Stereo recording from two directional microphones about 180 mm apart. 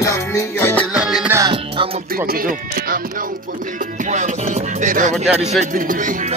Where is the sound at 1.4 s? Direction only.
30° right (ahead or behind).